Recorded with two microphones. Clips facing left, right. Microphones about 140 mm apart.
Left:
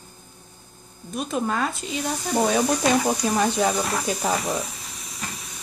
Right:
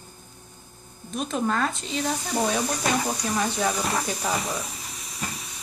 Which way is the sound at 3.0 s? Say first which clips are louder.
Left 5 dB; 30° left (ahead or behind).